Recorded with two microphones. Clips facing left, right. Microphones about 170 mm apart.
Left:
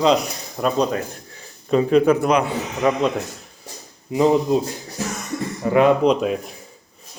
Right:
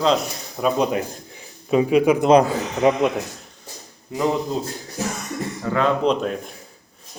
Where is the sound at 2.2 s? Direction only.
35° right (ahead or behind).